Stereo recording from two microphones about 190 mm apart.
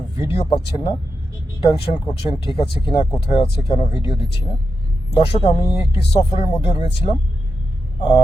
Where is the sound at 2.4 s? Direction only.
25° left (ahead or behind).